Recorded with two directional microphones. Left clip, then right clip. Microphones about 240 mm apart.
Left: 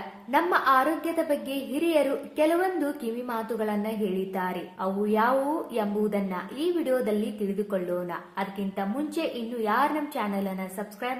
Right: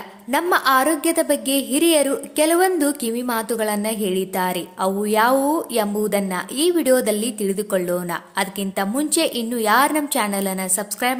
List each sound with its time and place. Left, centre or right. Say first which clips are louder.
0.3 s a woman's voice: right 5 dB; right